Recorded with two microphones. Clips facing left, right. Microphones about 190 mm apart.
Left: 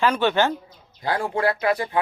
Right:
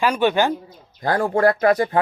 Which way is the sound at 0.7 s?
50° right (ahead or behind).